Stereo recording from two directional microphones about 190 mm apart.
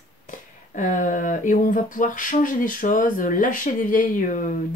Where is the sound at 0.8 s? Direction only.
45° left (ahead or behind).